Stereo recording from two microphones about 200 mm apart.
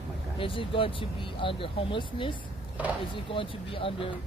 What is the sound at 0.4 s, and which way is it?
Speech, 25° left (ahead or behind).